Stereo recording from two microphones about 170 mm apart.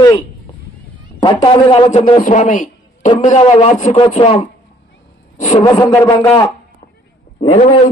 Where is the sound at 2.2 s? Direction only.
45° left (ahead or behind).